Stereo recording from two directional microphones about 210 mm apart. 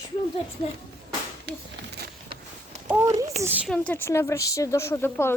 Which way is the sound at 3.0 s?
15° right (ahead or behind).